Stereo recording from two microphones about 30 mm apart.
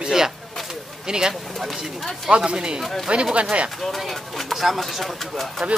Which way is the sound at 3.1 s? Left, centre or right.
Right.